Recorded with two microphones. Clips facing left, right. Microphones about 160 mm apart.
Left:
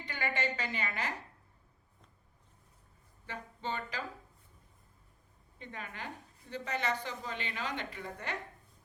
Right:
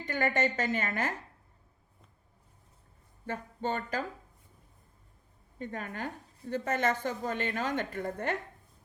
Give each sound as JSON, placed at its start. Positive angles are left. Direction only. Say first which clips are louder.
{"t": 0.0, "sound": "speech", "louder": "right 7 dB", "side_deg": -45}
{"t": 3.2, "sound": "speech", "louder": "right 6 dB", "side_deg": -45}
{"t": 5.5, "sound": "speech", "louder": "right 7 dB", "side_deg": -45}